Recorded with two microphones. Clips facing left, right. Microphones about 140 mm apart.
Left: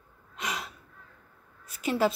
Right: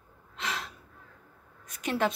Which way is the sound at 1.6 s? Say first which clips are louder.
Left 2 dB; 5° left (ahead or behind).